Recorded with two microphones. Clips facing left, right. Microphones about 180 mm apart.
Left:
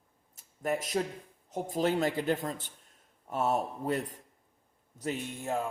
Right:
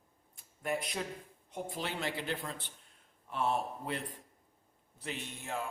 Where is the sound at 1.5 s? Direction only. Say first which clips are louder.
Left 10 dB; 45° left (ahead or behind).